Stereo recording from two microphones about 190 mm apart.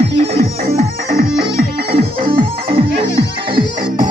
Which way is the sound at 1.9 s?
30° right (ahead or behind).